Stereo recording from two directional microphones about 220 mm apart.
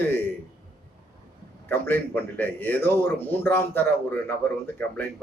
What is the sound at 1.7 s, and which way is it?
A man's voice, 10° left (ahead or behind).